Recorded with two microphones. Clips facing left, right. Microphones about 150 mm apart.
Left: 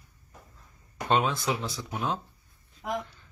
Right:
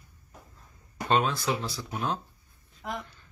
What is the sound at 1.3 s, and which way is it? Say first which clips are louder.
Speech: even; 20° left (ahead or behind).